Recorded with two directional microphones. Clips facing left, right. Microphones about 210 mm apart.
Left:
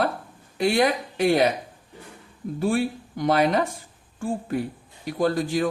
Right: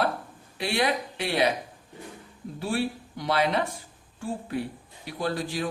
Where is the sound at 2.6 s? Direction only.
50° left (ahead or behind).